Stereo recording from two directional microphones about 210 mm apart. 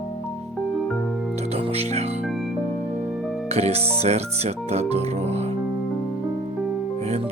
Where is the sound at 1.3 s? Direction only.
30° right (ahead or behind).